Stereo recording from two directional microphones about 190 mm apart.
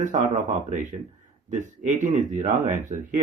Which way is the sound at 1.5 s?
40° right (ahead or behind).